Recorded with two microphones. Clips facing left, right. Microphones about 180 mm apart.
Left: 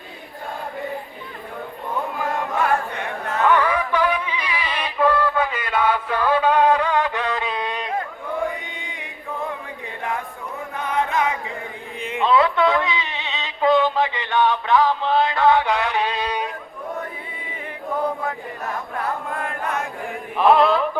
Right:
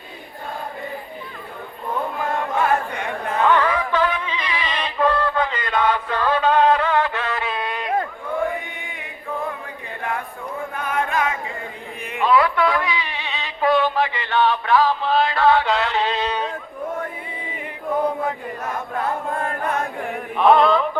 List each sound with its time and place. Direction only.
3.4 s music: 10° left (ahead or behind)
10.8 s a sound: 20° left (ahead or behind)
19.4 s chant: 35° right (ahead or behind)
20.3 s chant: centre (ahead or behind)